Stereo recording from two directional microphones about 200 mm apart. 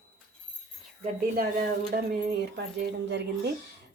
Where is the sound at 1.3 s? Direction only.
45° right (ahead or behind).